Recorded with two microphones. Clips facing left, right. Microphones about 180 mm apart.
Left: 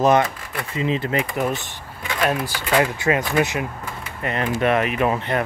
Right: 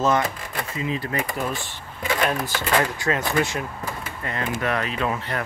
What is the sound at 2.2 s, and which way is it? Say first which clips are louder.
Speech: left 6 dB; 10° left (ahead or behind).